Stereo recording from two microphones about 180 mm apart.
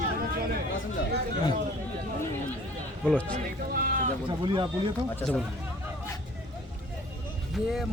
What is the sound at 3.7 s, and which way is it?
Speech, 50° right (ahead or behind).